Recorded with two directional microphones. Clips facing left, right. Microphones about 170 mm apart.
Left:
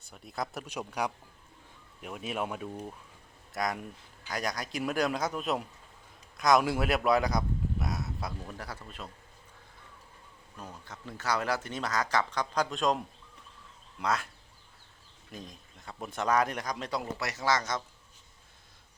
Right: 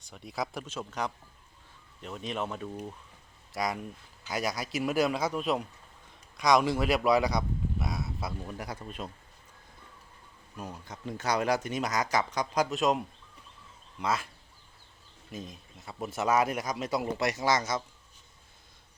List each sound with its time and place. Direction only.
0.0 s a man's voice: centre (ahead or behind)
0.7 s speech: 15° left (ahead or behind)
3.5 s a man's voice: centre (ahead or behind)
8.5 s speech: 15° right (ahead or behind)
10.6 s speech: 15° right (ahead or behind)
14.0 s a man's voice: centre (ahead or behind)
15.3 s speech: 5° right (ahead or behind)